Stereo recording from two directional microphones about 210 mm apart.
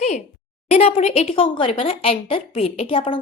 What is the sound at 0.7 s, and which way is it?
Speech, 30° left (ahead or behind).